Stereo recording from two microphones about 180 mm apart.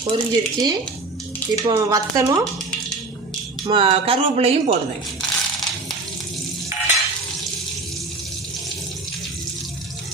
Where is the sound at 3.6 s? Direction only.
30° right (ahead or behind).